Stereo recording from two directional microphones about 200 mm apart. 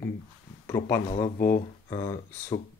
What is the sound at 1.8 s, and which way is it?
Speech, 25° left (ahead or behind).